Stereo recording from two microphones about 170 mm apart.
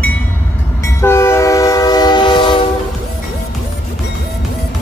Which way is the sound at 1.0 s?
15° left (ahead or behind).